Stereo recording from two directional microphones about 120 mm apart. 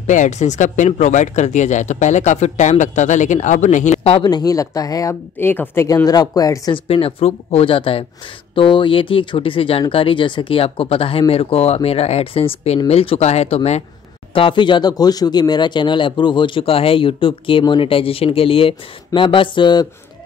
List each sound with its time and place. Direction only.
0.0 s speech: 85° left
4.2 s speech: 35° left (ahead or behind)
5.4 s a woman's voice: 20° left (ahead or behind)
6.0 s speech: 30° left (ahead or behind)
6.7 s speech: 55° left (ahead or behind)
14.3 s speech: 45° left (ahead or behind)